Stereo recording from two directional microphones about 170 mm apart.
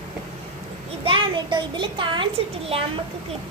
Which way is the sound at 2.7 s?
35° right (ahead or behind).